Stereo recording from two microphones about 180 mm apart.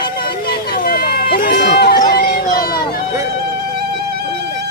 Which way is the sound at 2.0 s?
60° left (ahead or behind).